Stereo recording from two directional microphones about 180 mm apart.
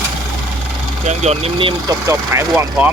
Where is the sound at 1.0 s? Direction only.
35° right (ahead or behind).